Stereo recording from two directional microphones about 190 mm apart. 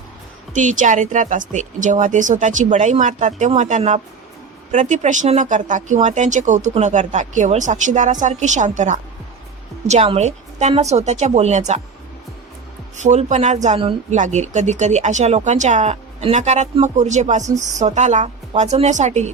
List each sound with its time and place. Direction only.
0.5 s speech: 40° right (ahead or behind)
13.0 s speech: 40° right (ahead or behind)